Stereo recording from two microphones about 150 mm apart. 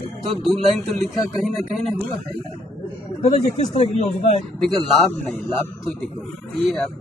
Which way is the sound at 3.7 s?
45° left (ahead or behind).